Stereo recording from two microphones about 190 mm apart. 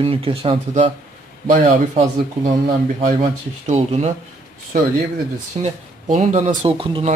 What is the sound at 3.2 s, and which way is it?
Speech, 35° right (ahead or behind).